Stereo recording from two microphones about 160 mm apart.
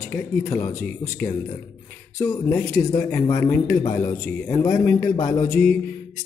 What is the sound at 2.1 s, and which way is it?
A man's voice, 15° left (ahead or behind).